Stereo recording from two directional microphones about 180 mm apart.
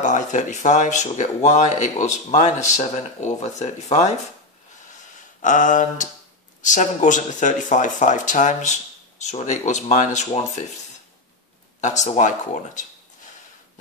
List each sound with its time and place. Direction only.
0.0 s speech: 45° left (ahead or behind)
5.4 s speech: 45° left (ahead or behind)
11.8 s speech: 40° left (ahead or behind)